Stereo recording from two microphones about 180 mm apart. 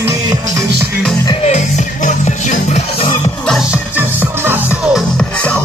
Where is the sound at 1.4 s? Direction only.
40° left (ahead or behind).